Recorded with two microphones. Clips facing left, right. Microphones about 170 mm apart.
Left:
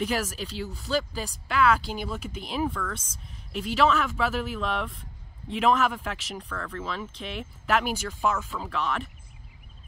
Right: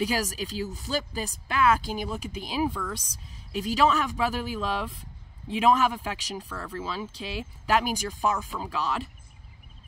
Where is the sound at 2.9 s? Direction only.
35° right (ahead or behind).